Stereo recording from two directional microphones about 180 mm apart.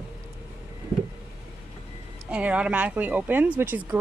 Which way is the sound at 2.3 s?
5° right (ahead or behind).